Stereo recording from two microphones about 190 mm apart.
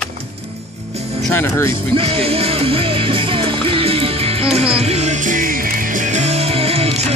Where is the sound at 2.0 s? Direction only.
30° right (ahead or behind).